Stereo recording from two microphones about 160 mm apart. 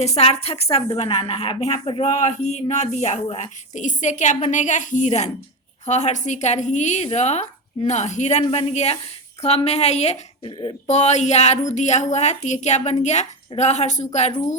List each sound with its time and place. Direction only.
0.0 s a woman's voice: 40° left (ahead or behind)
2.0 s a woman's voice: 45° left (ahead or behind)
10.8 s speech: 45° left (ahead or behind)